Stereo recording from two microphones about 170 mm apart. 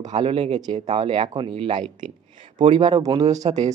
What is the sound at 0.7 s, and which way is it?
Speech, 40° right (ahead or behind).